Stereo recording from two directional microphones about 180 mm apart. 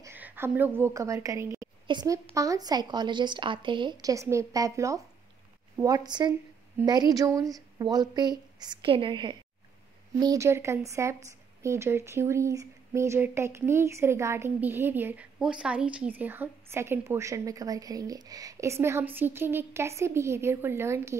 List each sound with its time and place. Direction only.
0.0 s a woman's voice: 10° right (ahead or behind)